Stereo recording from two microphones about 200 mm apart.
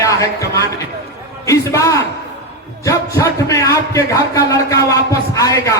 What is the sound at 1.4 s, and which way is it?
A man's voice, 15° left (ahead or behind).